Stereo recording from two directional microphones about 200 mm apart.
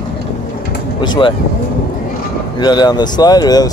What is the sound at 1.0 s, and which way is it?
Speech, 20° left (ahead or behind).